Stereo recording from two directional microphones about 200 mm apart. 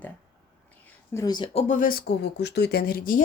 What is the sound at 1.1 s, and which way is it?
Speech, 20° left (ahead or behind).